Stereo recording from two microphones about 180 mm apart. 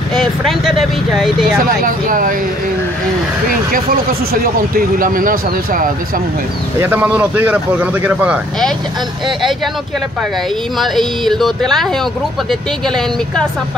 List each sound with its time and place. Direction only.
0.1 s speech: centre (ahead or behind)
1.6 s speech: 50° right (ahead or behind)
4.3 s speech: 55° right (ahead or behind)
6.8 s speech: 10° right (ahead or behind)
10.8 s speech: centre (ahead or behind)